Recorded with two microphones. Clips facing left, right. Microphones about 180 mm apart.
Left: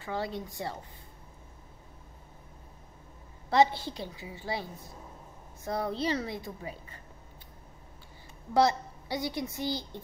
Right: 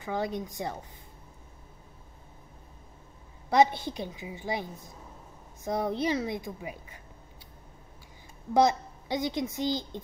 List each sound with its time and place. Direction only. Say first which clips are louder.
0.0 s a woman's voice: right 3 dB; 15° right (ahead or behind)
3.4 s a woman's voice: right 1 dB; 15° right (ahead or behind)
8.5 s a woman's voice: right 2 dB; 20° right (ahead or behind)